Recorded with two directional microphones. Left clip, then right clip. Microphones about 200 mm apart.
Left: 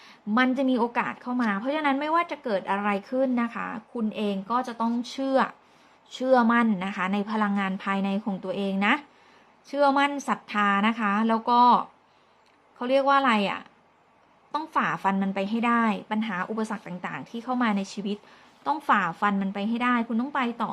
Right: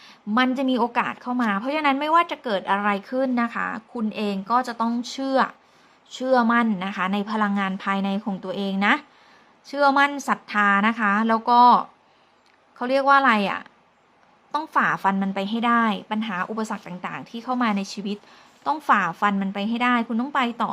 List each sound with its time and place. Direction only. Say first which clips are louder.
0.0 s a woman's voice: right 2 dB; centre (ahead or behind)